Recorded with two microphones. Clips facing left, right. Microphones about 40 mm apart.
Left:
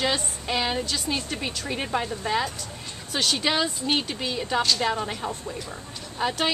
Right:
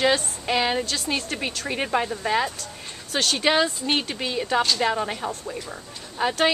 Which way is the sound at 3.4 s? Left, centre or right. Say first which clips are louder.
Right 4 dB; centre.